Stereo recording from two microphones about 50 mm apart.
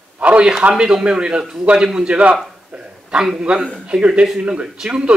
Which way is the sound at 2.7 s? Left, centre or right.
Centre.